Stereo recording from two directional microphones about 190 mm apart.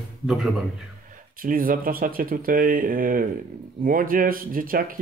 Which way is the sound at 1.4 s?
50° right (ahead or behind).